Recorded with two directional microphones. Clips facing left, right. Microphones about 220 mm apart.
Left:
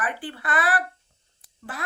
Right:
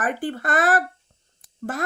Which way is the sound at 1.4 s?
45° right (ahead or behind).